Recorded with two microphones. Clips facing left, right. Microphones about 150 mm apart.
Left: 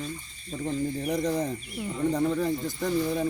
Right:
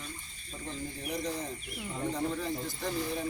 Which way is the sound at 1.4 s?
45° left (ahead or behind).